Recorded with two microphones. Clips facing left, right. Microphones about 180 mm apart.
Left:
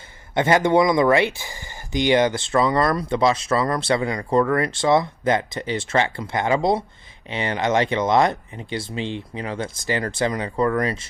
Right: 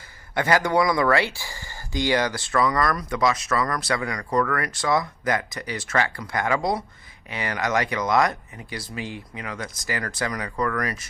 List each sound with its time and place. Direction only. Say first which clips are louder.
0.3 s speech: left 4 dB; 25° left (ahead or behind)